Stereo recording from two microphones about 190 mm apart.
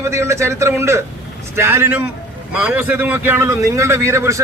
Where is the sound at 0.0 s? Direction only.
15° right (ahead or behind).